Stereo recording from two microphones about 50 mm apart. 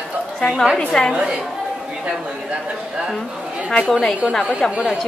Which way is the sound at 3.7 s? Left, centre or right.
Centre.